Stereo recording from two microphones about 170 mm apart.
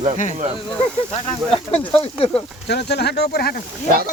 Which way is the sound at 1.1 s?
30° left (ahead or behind).